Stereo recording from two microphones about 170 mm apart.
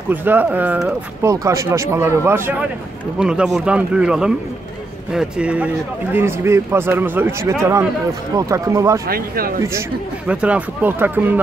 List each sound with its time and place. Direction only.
0.1 s speech: 10° right (ahead or behind)
1.2 s speech: 20° right (ahead or behind)
9.0 s speech: 60° right (ahead or behind)
9.8 s speech: 5° right (ahead or behind)